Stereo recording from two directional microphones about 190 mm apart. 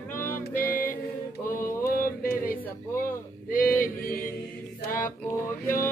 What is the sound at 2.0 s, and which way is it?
Music, 50° left (ahead or behind).